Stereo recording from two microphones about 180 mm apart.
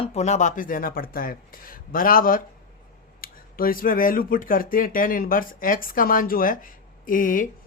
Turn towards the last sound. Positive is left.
turn(degrees=50)  # may be behind; listen again after turning